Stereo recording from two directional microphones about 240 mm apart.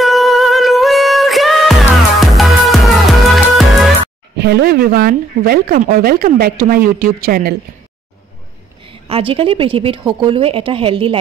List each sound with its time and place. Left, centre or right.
0.0 s music: centre
4.4 s speech: right
8.8 s a woman's voice: right